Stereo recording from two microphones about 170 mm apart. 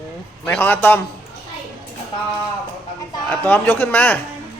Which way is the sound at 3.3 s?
10° left (ahead or behind).